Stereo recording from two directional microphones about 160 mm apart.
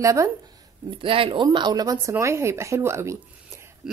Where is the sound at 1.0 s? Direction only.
35° right (ahead or behind).